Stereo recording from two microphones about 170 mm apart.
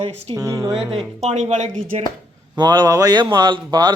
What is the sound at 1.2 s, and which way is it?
Speech, 40° right (ahead or behind).